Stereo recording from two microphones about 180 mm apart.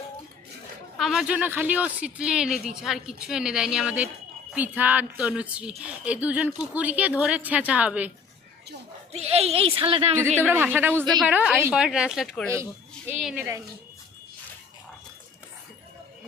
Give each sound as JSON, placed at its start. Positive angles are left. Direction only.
{"t": 0.9, "sound": "a woman's voice", "side_deg": 0}
{"t": 9.1, "sound": "a woman's voice", "side_deg": -35}
{"t": 10.2, "sound": "a woman's voice", "side_deg": -10}